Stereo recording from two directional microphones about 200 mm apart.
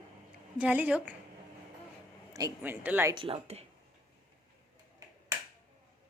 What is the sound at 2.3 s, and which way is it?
Speech, 15° right (ahead or behind).